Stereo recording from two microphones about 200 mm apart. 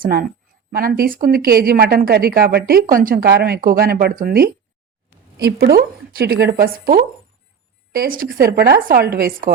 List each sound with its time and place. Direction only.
0.0 s a woman's voice: 50° right (ahead or behind)